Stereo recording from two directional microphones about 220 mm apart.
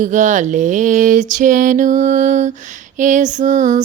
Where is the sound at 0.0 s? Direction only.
35° right (ahead or behind).